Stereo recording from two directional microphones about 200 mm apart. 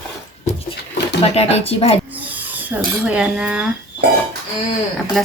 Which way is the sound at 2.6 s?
5° right (ahead or behind).